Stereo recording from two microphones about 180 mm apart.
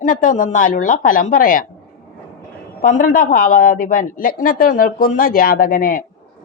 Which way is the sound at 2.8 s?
50° left (ahead or behind).